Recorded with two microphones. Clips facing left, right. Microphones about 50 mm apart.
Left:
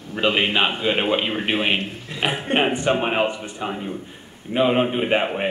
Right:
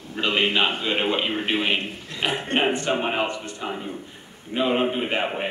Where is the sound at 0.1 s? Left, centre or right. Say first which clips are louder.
Left 2 dB; centre.